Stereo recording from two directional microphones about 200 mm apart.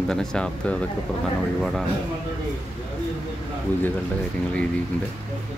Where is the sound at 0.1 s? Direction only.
5° left (ahead or behind).